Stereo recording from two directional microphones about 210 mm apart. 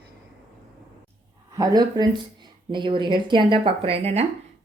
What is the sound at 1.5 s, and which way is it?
Speech, 20° right (ahead or behind).